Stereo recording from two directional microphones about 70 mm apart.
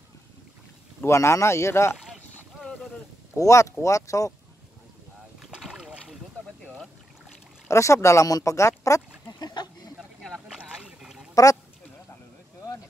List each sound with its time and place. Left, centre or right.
1.0 s speech: left
3.3 s speech: left
5.7 s boat: centre
7.6 s speech: left
9.4 s a sound: left
10.5 s boat: centre